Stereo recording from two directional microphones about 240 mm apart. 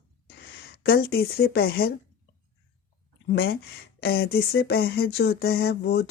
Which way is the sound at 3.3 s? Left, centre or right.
Left.